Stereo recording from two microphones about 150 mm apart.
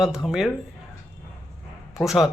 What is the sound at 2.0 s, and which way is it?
Speech, centre (ahead or behind).